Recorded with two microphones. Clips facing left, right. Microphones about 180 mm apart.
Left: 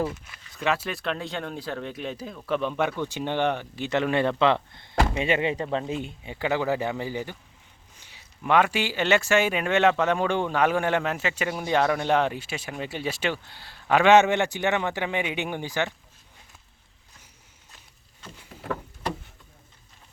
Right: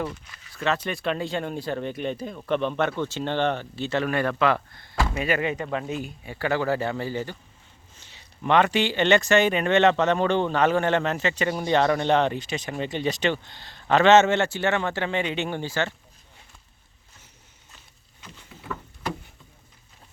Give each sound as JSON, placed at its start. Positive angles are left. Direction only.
{"t": 0.5, "sound": "speech", "side_deg": 10}
{"t": 6.3, "sound": "speech", "side_deg": 15}